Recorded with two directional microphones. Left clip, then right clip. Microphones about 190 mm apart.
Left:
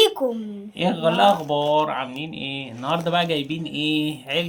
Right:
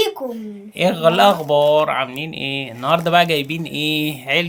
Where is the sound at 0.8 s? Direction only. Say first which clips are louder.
Right 5 dB; 65° right (ahead or behind).